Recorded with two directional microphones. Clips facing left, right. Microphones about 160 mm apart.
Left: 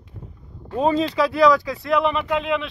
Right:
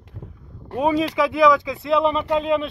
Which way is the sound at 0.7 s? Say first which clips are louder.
Even; 10° right (ahead or behind).